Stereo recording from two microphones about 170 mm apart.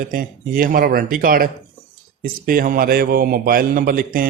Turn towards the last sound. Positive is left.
turn(degrees=-60)  # may be behind; listen again after turning